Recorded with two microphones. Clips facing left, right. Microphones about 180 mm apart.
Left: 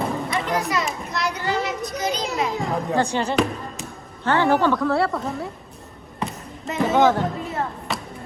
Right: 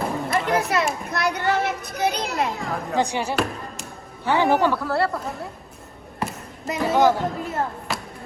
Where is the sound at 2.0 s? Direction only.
60° right (ahead or behind).